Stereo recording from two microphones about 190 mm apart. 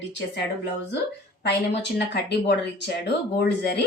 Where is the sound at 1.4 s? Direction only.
60° left (ahead or behind).